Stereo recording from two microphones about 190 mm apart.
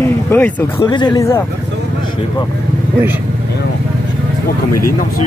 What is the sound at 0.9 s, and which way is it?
Speech, 20° left (ahead or behind).